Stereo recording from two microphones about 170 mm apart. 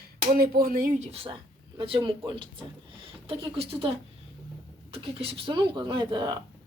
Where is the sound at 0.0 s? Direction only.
60° right (ahead or behind).